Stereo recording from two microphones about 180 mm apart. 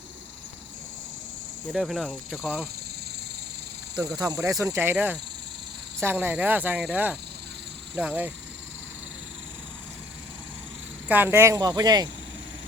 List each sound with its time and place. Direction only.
1.7 s speech: centre (ahead or behind)
3.9 s speech: 20° right (ahead or behind)
6.0 s cricket: 10° right (ahead or behind)
11.1 s speech: 10° right (ahead or behind)